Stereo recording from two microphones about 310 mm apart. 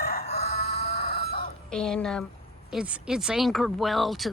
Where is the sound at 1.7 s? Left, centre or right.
Centre.